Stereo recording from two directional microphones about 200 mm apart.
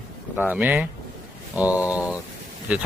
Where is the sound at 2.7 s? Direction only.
5° right (ahead or behind).